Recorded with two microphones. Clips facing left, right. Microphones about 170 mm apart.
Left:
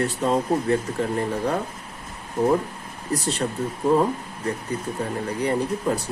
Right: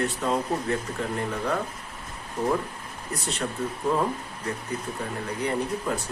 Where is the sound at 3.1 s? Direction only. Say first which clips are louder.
Left 6 dB; 35° left (ahead or behind).